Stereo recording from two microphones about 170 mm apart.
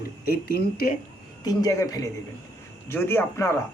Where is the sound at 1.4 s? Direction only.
20° left (ahead or behind).